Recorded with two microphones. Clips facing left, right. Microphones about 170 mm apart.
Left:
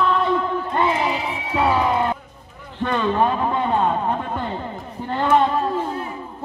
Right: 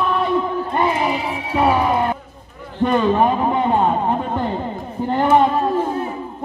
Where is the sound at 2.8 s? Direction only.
20° right (ahead or behind).